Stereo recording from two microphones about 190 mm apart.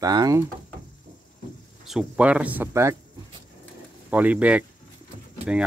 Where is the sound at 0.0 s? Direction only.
20° right (ahead or behind).